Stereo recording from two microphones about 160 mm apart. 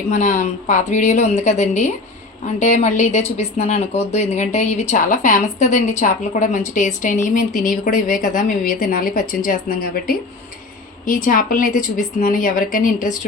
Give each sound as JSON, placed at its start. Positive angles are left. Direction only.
{"t": 0.1, "sound": "a woman's voice", "side_deg": 50}